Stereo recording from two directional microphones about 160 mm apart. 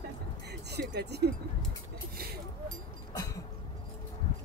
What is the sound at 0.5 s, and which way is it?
Speech, 90° right.